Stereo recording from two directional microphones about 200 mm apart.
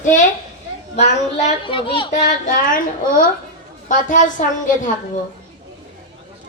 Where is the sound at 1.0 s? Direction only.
30° left (ahead or behind).